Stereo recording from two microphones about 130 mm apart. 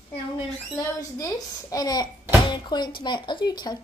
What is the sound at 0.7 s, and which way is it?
A child's voice, 25° left (ahead or behind).